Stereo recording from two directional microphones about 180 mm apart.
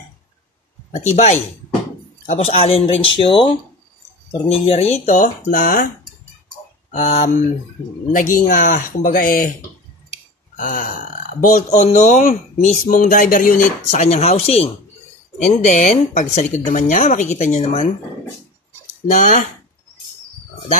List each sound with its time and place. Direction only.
1.1 s speech: 40° left (ahead or behind)
6.9 s speech: 40° left (ahead or behind)
8.1 s speech: 50° left (ahead or behind)
10.5 s speech: 45° left (ahead or behind)
19.0 s speech: 45° left (ahead or behind)